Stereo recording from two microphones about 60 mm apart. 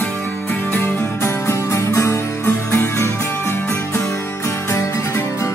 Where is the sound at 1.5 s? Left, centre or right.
Left.